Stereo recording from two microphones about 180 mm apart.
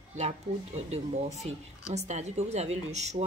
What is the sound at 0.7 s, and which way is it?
Speech, 40° right (ahead or behind).